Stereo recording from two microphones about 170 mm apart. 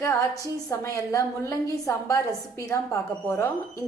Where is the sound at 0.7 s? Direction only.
20° left (ahead or behind).